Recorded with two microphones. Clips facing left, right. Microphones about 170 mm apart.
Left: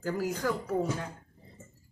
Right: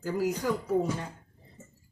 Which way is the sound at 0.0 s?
15° right (ahead or behind).